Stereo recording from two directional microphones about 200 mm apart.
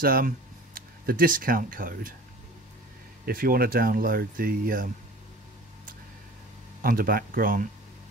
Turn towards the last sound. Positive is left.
turn(degrees=-45)  # may be behind; listen again after turning